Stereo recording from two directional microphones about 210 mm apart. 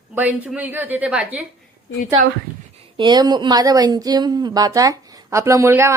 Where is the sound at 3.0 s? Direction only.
20° right (ahead or behind).